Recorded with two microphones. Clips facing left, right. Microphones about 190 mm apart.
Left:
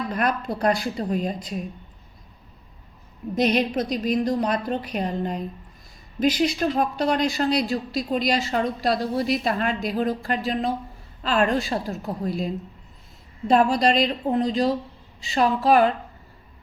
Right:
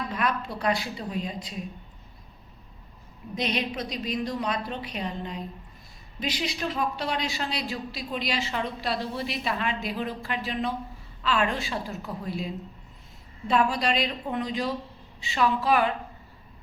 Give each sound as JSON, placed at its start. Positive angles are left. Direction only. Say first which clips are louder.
{"t": 0.1, "sound": "speech", "louder": "left 4 dB", "side_deg": 45}
{"t": 3.3, "sound": "a woman's voice", "louder": "left 8 dB", "side_deg": 45}
{"t": 13.5, "sound": "a woman's voice", "louder": "left 6 dB", "side_deg": 40}